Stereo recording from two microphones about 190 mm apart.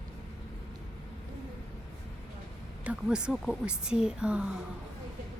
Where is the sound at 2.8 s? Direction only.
5° right (ahead or behind).